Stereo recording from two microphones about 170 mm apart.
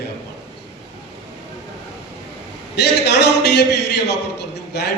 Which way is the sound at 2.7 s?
80° left.